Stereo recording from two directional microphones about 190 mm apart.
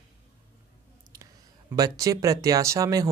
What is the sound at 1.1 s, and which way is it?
Speech, 20° right (ahead or behind).